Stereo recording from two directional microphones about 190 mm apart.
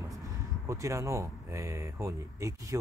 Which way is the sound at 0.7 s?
15° right (ahead or behind).